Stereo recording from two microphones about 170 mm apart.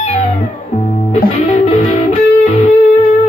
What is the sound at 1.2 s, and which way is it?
Music, 35° left (ahead or behind).